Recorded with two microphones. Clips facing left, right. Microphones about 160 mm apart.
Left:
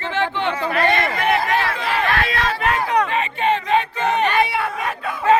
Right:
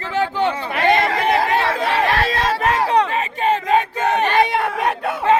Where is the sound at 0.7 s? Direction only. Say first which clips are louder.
Right 3 dB; 20° right (ahead or behind).